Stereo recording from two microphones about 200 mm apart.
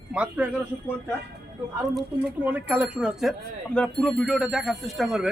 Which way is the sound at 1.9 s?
5° right (ahead or behind).